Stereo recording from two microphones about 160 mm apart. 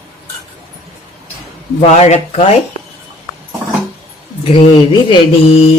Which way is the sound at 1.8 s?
45° left (ahead or behind).